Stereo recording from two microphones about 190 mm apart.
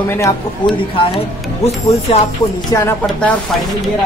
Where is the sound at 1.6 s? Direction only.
35° left (ahead or behind).